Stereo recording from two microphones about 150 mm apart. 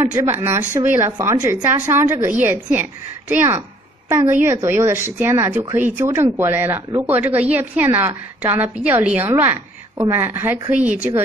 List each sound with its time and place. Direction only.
0.0 s speech: 15° right (ahead or behind)